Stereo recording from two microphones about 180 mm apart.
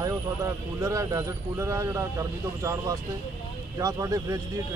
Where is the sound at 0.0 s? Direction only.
20° right (ahead or behind).